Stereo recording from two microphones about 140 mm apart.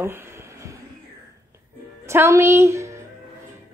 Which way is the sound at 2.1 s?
20° right (ahead or behind).